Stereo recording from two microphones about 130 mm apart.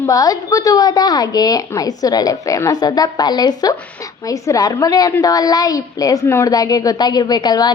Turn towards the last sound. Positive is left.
turn(degrees=30)  # may be behind; listen again after turning